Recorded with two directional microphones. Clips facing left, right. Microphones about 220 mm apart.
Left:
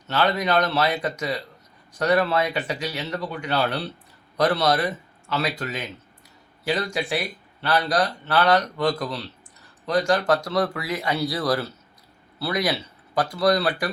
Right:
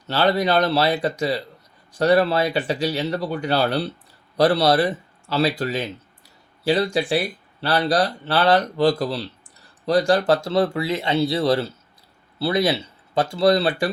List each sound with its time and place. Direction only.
0.1 s speech: 30° right (ahead or behind)